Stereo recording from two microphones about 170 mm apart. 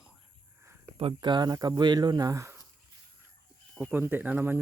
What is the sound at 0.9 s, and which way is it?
Speech, 30° right (ahead or behind).